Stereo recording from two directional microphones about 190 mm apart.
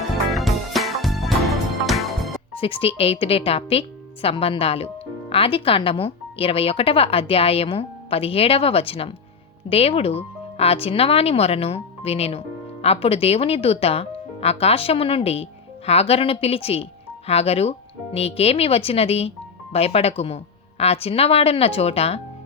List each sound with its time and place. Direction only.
0.3 s music: centre (ahead or behind)
2.6 s speech: 30° left (ahead or behind)